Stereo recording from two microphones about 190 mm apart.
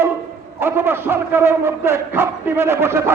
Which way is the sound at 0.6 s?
10° right (ahead or behind).